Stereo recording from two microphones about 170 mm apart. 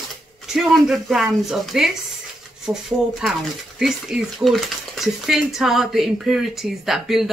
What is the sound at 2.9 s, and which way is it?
Speech, 15° right (ahead or behind).